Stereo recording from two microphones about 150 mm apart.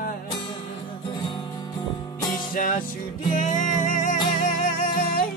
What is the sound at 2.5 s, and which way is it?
Music, 65° left (ahead or behind).